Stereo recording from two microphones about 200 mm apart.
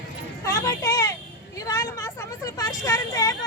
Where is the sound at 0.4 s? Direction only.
15° left (ahead or behind).